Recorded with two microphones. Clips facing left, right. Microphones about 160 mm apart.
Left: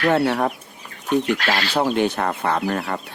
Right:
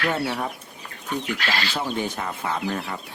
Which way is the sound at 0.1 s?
65° left (ahead or behind).